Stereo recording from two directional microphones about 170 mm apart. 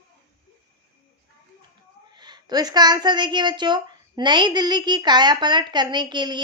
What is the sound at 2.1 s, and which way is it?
A woman's voice, 25° right (ahead or behind).